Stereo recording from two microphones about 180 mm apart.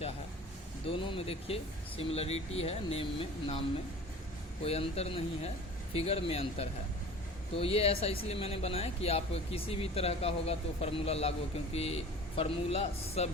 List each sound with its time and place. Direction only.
0.9 s speech: 30° left (ahead or behind)
4.6 s speech: 35° left (ahead or behind)